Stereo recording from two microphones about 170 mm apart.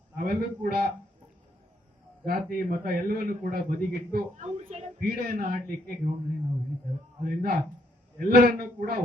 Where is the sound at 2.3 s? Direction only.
60° right (ahead or behind).